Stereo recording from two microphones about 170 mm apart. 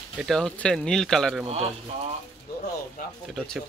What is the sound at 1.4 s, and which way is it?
Speech, 35° right (ahead or behind).